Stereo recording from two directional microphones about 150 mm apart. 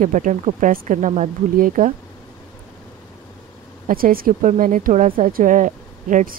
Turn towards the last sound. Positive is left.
turn(degrees=-60)  # may be behind; listen again after turning